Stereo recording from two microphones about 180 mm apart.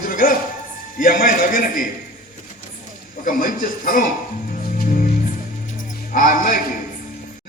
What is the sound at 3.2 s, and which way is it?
Speech, 50° left (ahead or behind).